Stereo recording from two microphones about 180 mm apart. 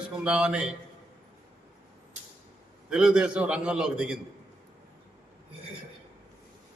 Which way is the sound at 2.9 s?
5° right (ahead or behind).